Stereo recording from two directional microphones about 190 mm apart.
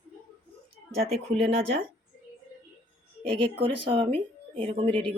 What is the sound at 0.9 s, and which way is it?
Speech, 30° right (ahead or behind).